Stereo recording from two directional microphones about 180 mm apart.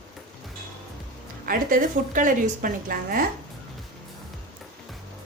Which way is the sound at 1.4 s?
50° right (ahead or behind).